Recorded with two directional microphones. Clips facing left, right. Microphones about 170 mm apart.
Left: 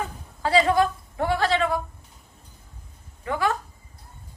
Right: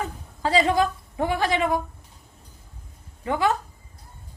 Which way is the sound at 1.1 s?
15° right (ahead or behind).